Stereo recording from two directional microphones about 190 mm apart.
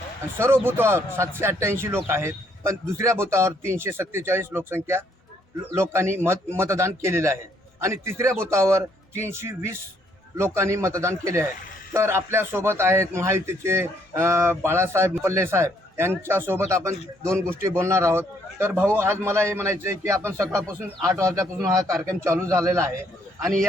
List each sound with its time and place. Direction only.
0.3 s a man's voice: 15° right (ahead or behind)